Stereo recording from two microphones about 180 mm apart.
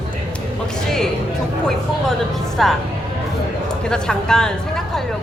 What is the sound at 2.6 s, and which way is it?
Speech, centre (ahead or behind).